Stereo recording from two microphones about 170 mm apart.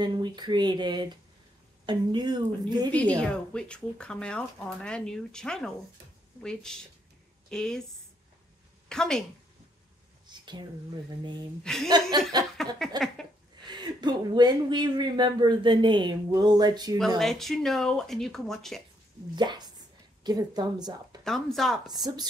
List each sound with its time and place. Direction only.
0.0 s speech: 25° right (ahead or behind)
3.2 s speech: 5° left (ahead or behind)
8.8 s a woman's voice: 5° left (ahead or behind)
10.2 s a sound: 25° right (ahead or behind)
11.6 s speech: 5° left (ahead or behind)
12.1 s speech: 25° right (ahead or behind)
12.6 s a sound: centre (ahead or behind)
12.9 s speech: 25° right (ahead or behind)
17.2 s speech: centre (ahead or behind)
19.3 s speech: 25° right (ahead or behind)
21.2 s speech: centre (ahead or behind)
21.8 s speech: 25° right (ahead or behind)